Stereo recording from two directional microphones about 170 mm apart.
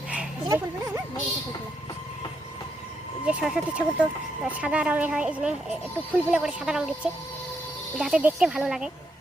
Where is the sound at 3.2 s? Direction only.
5° right (ahead or behind).